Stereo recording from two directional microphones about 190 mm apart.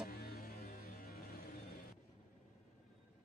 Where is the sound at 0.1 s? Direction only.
55° left (ahead or behind).